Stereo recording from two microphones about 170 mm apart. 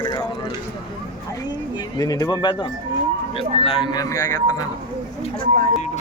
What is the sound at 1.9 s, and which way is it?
Speech, 20° left (ahead or behind).